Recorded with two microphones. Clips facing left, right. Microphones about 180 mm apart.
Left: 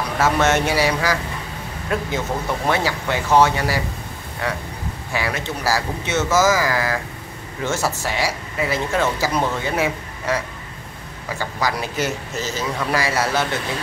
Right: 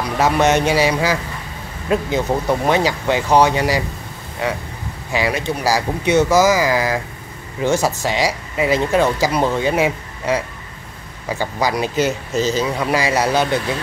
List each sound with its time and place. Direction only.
0.2 s speech: 15° right (ahead or behind)